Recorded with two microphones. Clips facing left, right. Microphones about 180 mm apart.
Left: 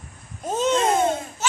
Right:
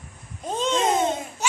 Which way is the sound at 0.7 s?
20° right (ahead or behind).